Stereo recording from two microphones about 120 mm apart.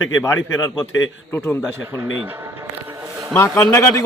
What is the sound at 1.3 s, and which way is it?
Speech, 15° left (ahead or behind).